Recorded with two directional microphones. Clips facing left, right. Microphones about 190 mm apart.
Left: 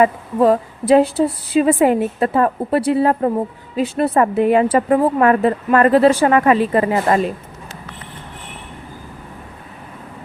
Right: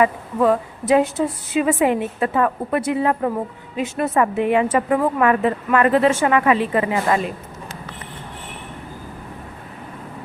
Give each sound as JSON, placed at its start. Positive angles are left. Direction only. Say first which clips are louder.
{"t": 0.0, "sound": "a woman's voice", "louder": "left 3 dB", "side_deg": 35}